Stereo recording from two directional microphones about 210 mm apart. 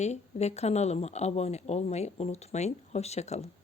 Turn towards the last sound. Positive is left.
turn(degrees=30)  # may be behind; listen again after turning